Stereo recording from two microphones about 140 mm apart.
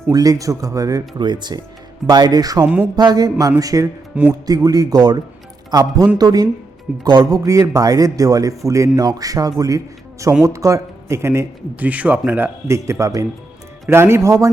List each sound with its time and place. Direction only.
0.1 s a man's voice: 25° right (ahead or behind)
4.1 s speech: 10° right (ahead or behind)
4.4 s a man's voice: 25° right (ahead or behind)